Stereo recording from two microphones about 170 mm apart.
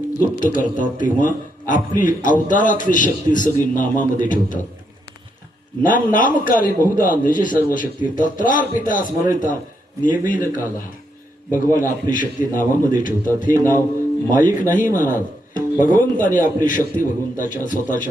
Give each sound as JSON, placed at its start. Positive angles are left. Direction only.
{"t": 0.3, "sound": "a man's voice", "side_deg": 50}
{"t": 5.8, "sound": "a man's voice", "side_deg": 50}
{"t": 11.8, "sound": "a man's voice", "side_deg": 50}